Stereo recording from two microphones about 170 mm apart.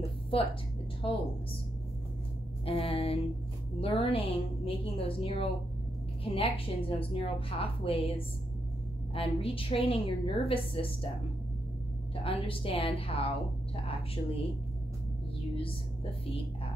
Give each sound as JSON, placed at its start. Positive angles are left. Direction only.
{"t": 2.6, "sound": "a woman's voice", "side_deg": 35}
{"t": 12.2, "sound": "a woman's voice", "side_deg": 30}
{"t": 15.5, "sound": "speech", "side_deg": 30}